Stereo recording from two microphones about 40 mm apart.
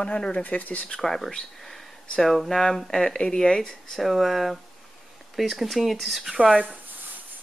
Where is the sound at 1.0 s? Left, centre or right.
Centre.